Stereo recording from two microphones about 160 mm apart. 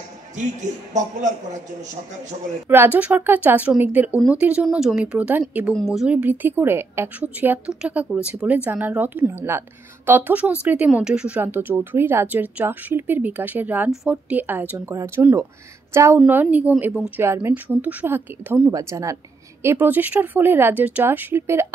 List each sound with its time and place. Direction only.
0.9 s a man's voice: 50° right (ahead or behind)
2.7 s a woman's voice: 10° right (ahead or behind)
17.2 s a woman's voice: 15° right (ahead or behind)